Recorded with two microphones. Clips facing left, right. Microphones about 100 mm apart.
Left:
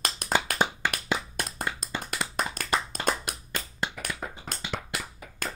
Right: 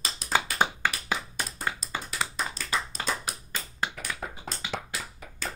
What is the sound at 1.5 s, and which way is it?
Tap, 55° left (ahead or behind).